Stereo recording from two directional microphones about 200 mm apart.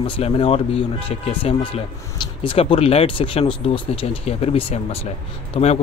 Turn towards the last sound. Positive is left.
turn(degrees=30)  # may be behind; listen again after turning